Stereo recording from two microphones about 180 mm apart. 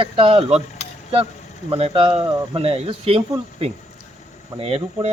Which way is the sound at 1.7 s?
30° right (ahead or behind).